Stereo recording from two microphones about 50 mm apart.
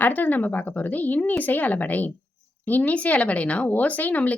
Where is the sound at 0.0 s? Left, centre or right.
Left.